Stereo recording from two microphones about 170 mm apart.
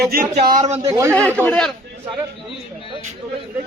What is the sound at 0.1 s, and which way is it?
Speech, 60° right (ahead or behind).